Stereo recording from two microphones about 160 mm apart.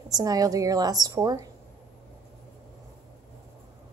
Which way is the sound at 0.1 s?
25° right (ahead or behind).